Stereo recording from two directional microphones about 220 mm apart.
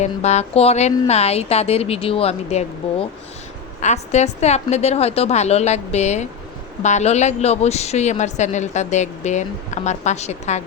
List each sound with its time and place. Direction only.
0.0 s a woman's voice: 30° left (ahead or behind)